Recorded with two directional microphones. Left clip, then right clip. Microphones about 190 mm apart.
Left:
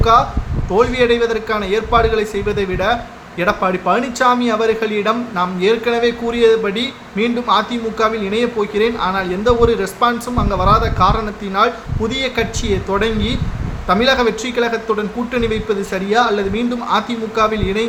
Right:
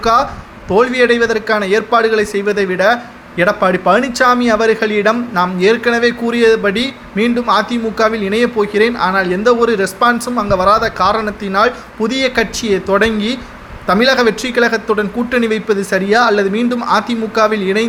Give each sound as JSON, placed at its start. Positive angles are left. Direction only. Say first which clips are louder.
{"t": 0.0, "sound": "a man's voice", "louder": "even", "side_deg": -25}